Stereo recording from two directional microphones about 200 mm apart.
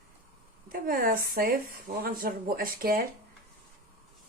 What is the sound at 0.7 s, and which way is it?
Speech, 45° right (ahead or behind).